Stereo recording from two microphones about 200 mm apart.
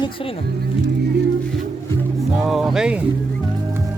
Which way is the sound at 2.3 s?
5° right (ahead or behind).